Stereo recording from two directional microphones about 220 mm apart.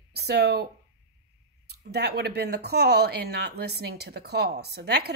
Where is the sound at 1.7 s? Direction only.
50° right (ahead or behind).